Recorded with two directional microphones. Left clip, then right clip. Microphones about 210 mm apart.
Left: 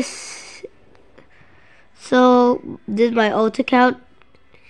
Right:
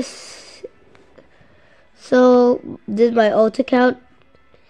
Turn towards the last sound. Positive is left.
turn(degrees=10)  # may be behind; listen again after turning